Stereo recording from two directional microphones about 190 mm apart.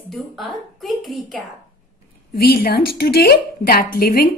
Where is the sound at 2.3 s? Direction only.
55° left (ahead or behind).